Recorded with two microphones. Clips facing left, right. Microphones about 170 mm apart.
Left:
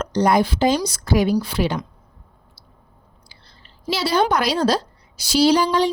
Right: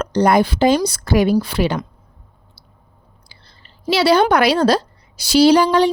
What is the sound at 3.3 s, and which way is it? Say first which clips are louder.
Speech: right 1 dB; 70° right (ahead or behind).